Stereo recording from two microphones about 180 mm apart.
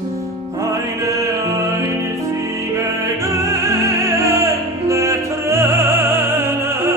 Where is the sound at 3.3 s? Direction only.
15° right (ahead or behind).